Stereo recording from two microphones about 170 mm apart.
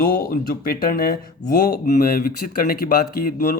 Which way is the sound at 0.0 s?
60° left (ahead or behind).